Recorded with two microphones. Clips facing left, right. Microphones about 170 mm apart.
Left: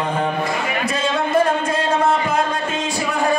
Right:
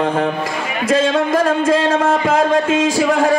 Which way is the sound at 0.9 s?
90° right.